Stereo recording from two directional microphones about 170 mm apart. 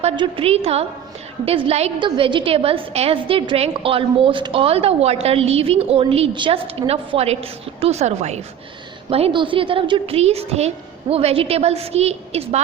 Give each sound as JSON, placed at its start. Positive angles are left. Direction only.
{"t": 0.0, "sound": "a woman's voice", "side_deg": -35}